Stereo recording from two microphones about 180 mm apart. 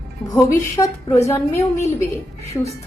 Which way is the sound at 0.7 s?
15° left (ahead or behind).